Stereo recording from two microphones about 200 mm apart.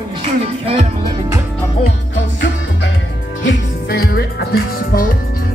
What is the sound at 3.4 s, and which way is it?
Music, 50° left (ahead or behind).